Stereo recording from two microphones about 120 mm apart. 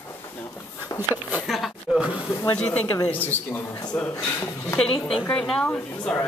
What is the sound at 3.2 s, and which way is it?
Speech, 15° left (ahead or behind).